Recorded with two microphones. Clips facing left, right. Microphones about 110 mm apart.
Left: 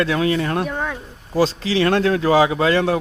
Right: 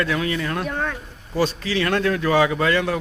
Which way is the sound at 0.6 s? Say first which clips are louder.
Left 2 dB; 10° left (ahead or behind).